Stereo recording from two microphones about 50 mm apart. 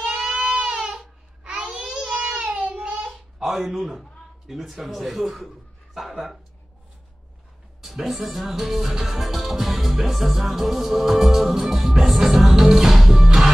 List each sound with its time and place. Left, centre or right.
0.0 s child singing: centre
3.1 s a sound: centre
4.5 s a man's voice: centre
7.8 s music: centre